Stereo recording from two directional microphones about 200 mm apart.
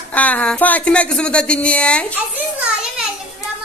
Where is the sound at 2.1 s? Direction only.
5° right (ahead or behind).